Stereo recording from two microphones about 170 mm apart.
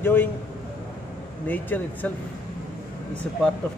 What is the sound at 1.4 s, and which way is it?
Speech, 10° left (ahead or behind).